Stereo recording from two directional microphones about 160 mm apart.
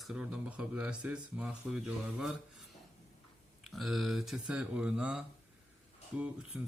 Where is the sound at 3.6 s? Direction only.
Centre (ahead or behind).